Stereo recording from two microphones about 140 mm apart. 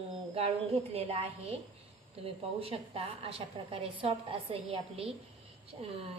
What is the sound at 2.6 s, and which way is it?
A woman's voice, 40° right (ahead or behind).